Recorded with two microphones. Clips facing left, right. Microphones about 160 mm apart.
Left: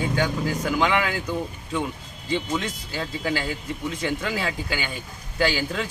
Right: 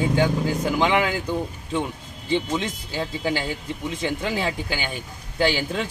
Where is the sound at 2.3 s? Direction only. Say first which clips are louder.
Right 2 dB; 20° right (ahead or behind).